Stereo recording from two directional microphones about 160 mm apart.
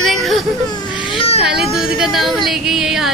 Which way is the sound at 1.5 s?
5° right (ahead or behind).